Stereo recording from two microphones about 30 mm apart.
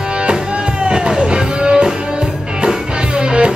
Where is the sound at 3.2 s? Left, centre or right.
Right.